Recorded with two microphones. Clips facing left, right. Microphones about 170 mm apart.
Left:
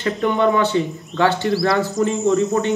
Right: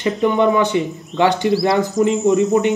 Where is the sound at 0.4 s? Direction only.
15° right (ahead or behind).